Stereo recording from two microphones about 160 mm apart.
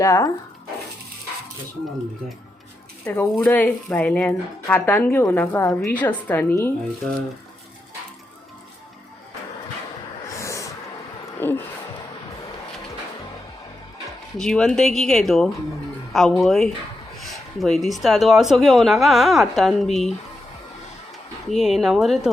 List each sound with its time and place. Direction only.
0.0 s speech: 20° left (ahead or behind)
3.0 s speech: 10° left (ahead or behind)
10.2 s snort: 20° left (ahead or behind)
11.3 s a sound: 15° left (ahead or behind)
14.3 s speech: 5° left (ahead or behind)
21.5 s speech: centre (ahead or behind)